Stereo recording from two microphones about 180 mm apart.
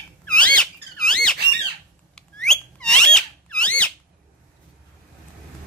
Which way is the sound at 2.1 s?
5° left (ahead or behind).